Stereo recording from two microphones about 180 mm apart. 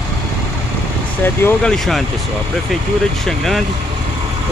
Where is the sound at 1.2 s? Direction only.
10° left (ahead or behind).